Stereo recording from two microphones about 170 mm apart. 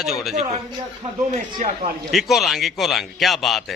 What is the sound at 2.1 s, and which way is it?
A man's voice, centre (ahead or behind).